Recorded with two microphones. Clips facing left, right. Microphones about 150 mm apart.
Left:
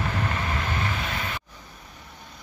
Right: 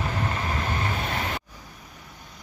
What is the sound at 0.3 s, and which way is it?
Vehicle, 35° right (ahead or behind).